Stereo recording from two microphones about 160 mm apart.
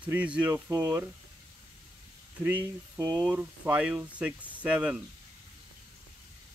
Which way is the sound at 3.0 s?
10° right (ahead or behind).